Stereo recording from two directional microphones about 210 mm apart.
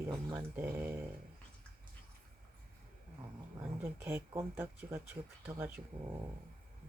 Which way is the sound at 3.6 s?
10° right (ahead or behind).